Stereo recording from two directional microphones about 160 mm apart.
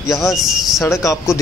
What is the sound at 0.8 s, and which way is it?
Speech, 20° left (ahead or behind).